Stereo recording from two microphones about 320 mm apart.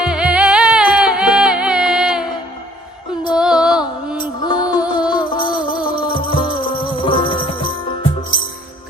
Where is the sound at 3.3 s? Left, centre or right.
Centre.